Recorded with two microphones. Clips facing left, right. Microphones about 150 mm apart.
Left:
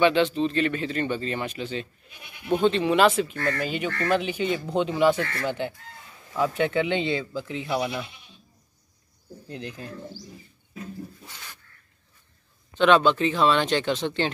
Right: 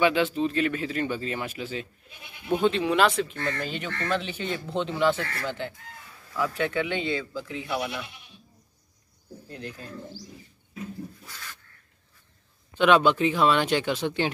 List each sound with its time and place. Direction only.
0.0 s speech: 5° right (ahead or behind); by 7.9 s 30° left (ahead or behind)
11.2 s speech: 20° left (ahead or behind)
12.7 s speech: 10° right (ahead or behind)